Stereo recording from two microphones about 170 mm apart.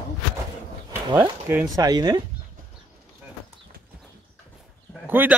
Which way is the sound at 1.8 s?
25° right (ahead or behind).